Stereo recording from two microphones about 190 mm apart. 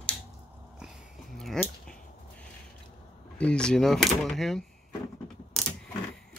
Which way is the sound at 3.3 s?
5° left (ahead or behind).